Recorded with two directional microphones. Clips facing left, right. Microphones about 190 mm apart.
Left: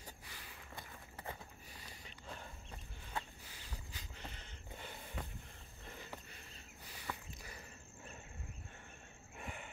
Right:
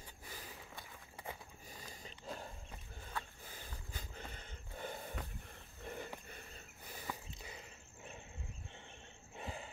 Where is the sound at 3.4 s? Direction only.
50° right (ahead or behind).